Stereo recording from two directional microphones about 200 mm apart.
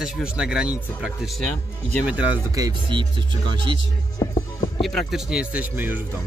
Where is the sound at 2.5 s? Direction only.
15° right (ahead or behind).